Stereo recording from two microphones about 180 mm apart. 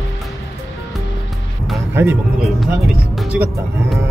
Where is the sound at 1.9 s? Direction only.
15° right (ahead or behind).